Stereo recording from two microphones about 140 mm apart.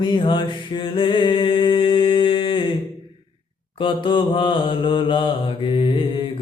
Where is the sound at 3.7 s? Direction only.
35° left (ahead or behind).